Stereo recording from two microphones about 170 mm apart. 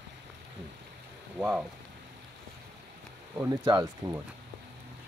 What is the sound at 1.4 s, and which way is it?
Speech, 10° right (ahead or behind).